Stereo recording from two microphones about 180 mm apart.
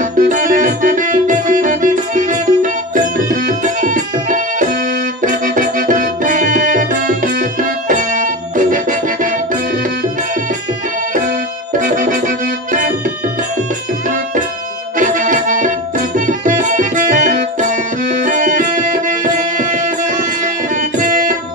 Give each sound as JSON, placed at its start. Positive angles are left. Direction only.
{"t": 0.0, "sound": "music", "side_deg": -50}
{"t": 11.8, "sound": "music", "side_deg": -45}
{"t": 15.0, "sound": "music", "side_deg": -45}